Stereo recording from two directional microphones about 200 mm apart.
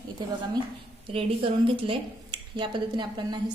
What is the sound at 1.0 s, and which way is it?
A woman's voice, 25° right (ahead or behind).